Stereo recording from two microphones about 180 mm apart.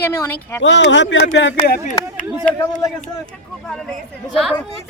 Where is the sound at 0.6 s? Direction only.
90° left.